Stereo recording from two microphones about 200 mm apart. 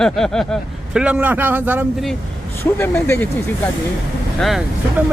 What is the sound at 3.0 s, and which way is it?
Speech, 10° left (ahead or behind).